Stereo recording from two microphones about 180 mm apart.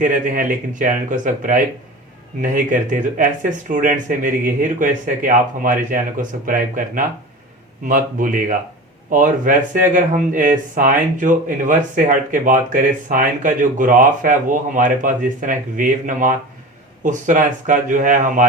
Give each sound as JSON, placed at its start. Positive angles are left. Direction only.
{"t": 0.0, "sound": "speech", "side_deg": -50}